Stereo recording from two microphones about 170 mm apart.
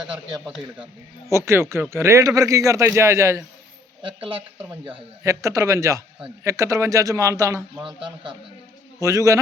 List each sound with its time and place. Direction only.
0.4 s speech: 5° right (ahead or behind)
1.3 s speech: 15° right (ahead or behind)
4.0 s speech: 30° right (ahead or behind)
5.2 s a man's voice: 20° right (ahead or behind)
7.9 s a man's voice: 30° right (ahead or behind)
9.0 s a man's voice: 20° right (ahead or behind)